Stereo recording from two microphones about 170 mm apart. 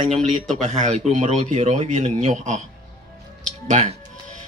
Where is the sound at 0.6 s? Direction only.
45° right (ahead or behind).